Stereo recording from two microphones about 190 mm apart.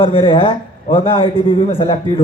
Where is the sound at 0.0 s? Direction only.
30° left (ahead or behind).